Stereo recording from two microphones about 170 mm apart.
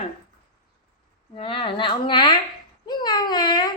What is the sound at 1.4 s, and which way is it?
Speech, 30° left (ahead or behind).